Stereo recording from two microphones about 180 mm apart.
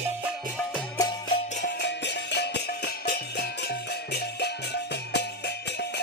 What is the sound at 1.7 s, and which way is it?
Music, 75° left (ahead or behind).